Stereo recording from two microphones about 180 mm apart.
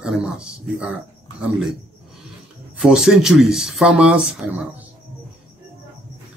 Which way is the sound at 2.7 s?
5° right (ahead or behind).